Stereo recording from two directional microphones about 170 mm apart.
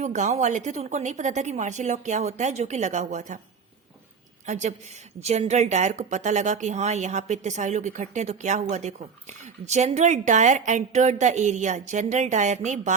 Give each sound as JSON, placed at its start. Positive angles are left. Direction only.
{"t": 0.0, "sound": "a woman's voice", "side_deg": -45}
{"t": 4.4, "sound": "a woman's voice", "side_deg": -45}